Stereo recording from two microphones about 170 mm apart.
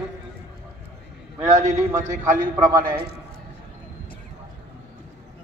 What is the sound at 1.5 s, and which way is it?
A man's voice, 45° right (ahead or behind).